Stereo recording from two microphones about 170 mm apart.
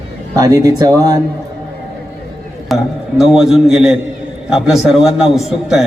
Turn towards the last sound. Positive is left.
turn(degrees=0)  # may be behind; listen again after turning